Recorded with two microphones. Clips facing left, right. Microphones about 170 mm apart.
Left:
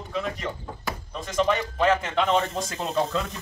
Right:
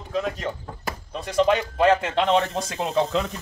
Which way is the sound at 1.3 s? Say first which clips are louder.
Right 4 dB; 35° right (ahead or behind).